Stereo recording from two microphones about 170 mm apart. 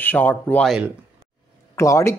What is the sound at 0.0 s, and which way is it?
Speech, 10° left (ahead or behind).